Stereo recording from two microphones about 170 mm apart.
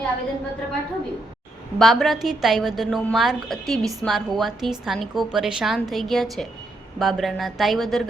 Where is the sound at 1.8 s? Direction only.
Centre (ahead or behind).